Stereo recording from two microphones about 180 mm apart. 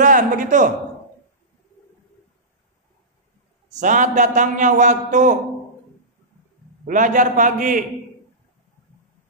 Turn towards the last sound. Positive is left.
turn(degrees=-45)  # may be behind; listen again after turning